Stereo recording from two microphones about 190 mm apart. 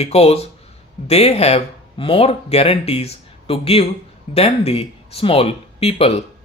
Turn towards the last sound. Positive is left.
turn(degrees=30)  # may be behind; listen again after turning